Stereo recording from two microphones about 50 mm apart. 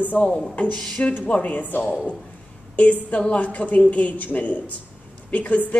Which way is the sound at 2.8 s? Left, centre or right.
Left.